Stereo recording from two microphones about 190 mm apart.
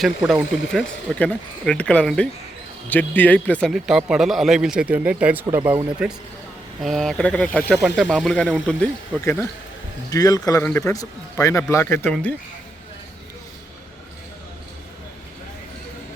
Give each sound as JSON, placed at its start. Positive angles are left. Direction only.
{"t": 0.0, "sound": "a man's voice", "side_deg": 0}